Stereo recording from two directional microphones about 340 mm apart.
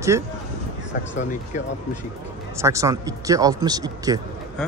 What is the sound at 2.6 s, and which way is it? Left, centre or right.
Speech, centre.